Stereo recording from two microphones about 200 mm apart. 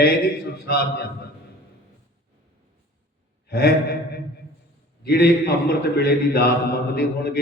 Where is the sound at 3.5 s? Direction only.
55° left (ahead or behind).